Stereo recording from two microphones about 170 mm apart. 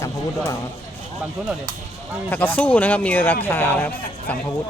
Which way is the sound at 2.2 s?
10° left (ahead or behind).